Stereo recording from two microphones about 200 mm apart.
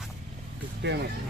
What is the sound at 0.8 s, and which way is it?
Speech, 60° right (ahead or behind).